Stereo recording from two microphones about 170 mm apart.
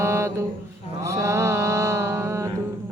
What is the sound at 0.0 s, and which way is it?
Mantra, 15° right (ahead or behind).